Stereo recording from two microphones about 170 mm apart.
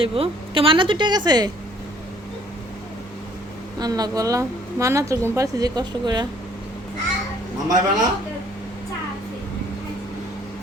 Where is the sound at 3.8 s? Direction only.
25° right (ahead or behind).